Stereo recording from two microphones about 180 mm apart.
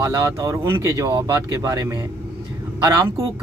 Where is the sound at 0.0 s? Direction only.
15° right (ahead or behind).